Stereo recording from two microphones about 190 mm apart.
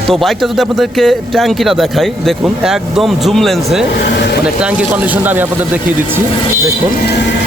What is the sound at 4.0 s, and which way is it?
Speech, 60° left (ahead or behind).